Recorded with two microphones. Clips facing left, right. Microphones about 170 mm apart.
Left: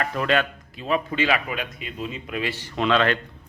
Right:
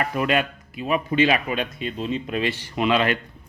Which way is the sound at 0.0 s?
10° right (ahead or behind).